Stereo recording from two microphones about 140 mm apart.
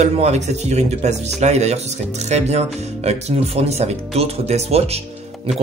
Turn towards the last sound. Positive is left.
turn(degrees=-50)  # may be behind; listen again after turning